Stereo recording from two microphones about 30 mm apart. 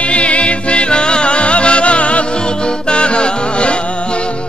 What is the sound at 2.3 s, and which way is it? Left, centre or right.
Music, left.